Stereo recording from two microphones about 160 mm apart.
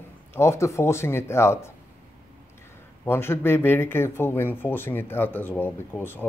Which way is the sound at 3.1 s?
15° left (ahead or behind).